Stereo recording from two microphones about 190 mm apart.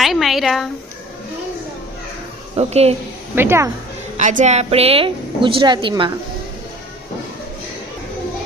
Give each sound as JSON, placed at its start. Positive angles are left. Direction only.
{"t": 0.0, "sound": "a sound", "side_deg": 0}
{"t": 2.6, "sound": "a woman's voice", "side_deg": -35}
{"t": 3.3, "sound": "a woman's voice", "side_deg": -10}
{"t": 4.2, "sound": "a woman's voice", "side_deg": -40}